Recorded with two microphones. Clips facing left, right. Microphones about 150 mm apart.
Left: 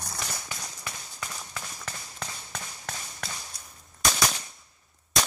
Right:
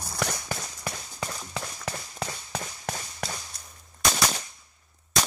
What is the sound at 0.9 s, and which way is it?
Clip-clop, 25° right (ahead or behind).